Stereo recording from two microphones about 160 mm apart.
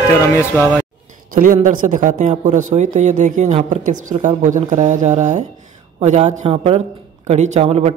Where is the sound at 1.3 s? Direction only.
55° right (ahead or behind).